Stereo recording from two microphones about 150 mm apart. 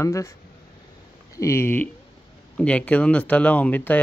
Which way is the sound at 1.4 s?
20° left (ahead or behind).